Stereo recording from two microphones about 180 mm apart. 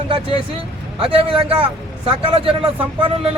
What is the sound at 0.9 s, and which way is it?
Speech, 30° right (ahead or behind).